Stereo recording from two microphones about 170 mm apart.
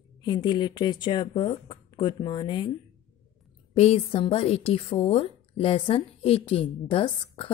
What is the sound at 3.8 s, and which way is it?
A woman's voice, 35° left (ahead or behind).